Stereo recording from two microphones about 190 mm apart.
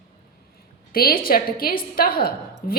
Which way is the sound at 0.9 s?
50° left (ahead or behind).